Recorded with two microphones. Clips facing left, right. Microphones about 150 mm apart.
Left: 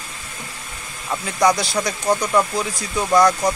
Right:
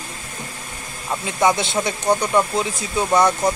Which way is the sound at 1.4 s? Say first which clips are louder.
Left 1 dB; 25° right (ahead or behind).